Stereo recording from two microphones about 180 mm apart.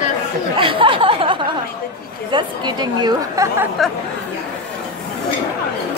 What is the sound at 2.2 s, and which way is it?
A woman's voice, 25° right (ahead or behind).